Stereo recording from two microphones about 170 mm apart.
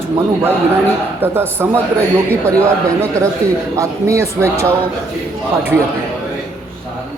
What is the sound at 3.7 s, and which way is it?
Speech, 15° right (ahead or behind).